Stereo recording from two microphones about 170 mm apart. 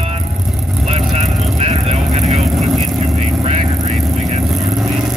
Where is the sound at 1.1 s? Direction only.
40° right (ahead or behind).